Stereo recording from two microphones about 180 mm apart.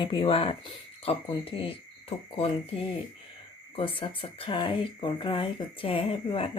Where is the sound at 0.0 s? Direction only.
25° left (ahead or behind).